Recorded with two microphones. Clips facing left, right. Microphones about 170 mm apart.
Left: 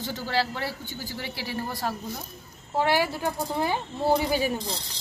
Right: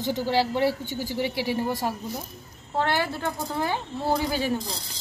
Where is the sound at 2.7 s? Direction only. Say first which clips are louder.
Left 1 dB; 10° left (ahead or behind).